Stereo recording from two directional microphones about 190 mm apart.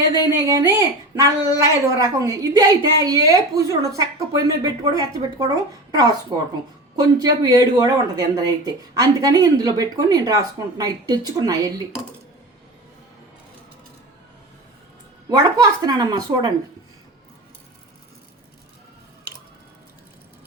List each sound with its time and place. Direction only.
0.1 s speech: 15° right (ahead or behind)
15.3 s speech: 20° right (ahead or behind)